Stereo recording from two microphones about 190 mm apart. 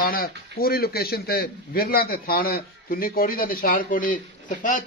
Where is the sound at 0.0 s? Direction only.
50° left (ahead or behind).